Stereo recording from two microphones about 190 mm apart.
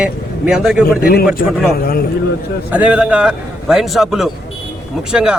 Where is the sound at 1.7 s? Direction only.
50° left (ahead or behind).